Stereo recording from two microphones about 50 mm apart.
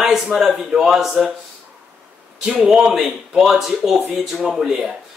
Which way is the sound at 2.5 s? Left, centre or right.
Centre.